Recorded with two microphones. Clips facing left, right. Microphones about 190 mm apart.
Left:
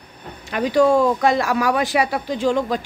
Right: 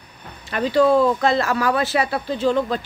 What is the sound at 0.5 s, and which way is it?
Speech, 15° left (ahead or behind).